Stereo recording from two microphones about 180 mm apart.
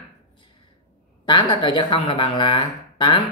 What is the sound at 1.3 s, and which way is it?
Speech, 25° left (ahead or behind).